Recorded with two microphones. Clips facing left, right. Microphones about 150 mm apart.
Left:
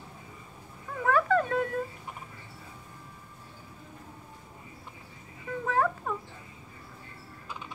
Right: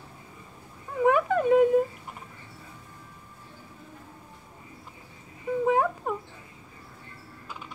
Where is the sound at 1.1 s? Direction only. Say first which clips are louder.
Right 4 dB; 15° right (ahead or behind).